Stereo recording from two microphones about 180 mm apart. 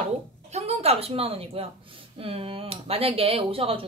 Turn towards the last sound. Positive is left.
turn(degrees=-30)  # may be behind; listen again after turning